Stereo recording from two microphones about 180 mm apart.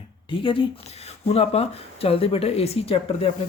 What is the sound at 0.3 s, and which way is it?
Speech, 30° left (ahead or behind).